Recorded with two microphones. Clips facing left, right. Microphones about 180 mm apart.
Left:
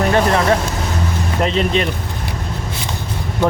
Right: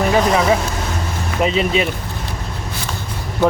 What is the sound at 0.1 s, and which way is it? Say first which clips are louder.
Speech: even; 5° right (ahead or behind).